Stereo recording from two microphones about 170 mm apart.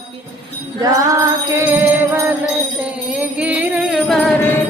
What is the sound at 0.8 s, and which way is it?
Music, 20° right (ahead or behind).